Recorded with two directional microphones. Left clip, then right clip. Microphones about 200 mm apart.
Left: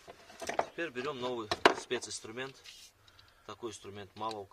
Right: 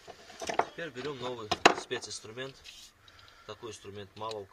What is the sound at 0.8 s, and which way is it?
Speech, 55° left (ahead or behind).